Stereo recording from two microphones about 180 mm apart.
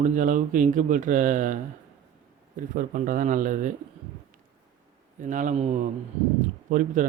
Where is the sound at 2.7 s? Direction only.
45° right (ahead or behind).